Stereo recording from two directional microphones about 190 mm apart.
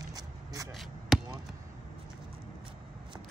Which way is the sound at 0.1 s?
20° right (ahead or behind).